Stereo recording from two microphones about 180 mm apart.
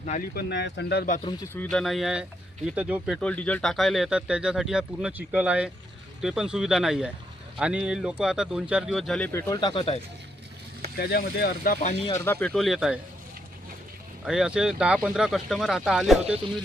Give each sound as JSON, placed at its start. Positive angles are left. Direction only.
{"t": 0.0, "sound": "speech", "side_deg": 40}
{"t": 0.3, "sound": "speech", "side_deg": 70}
{"t": 1.2, "sound": "speech", "side_deg": 20}
{"t": 1.7, "sound": "speech", "side_deg": 0}
{"t": 9.6, "sound": "speech", "side_deg": 30}
{"t": 10.9, "sound": "speech", "side_deg": 60}
{"t": 12.2, "sound": "speech", "side_deg": 10}
{"t": 14.3, "sound": "speech", "side_deg": -5}